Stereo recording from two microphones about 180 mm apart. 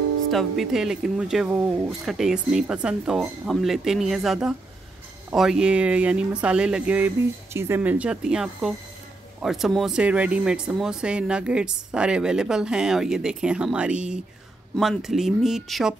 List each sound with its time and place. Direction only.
0.3 s speech: centre (ahead or behind)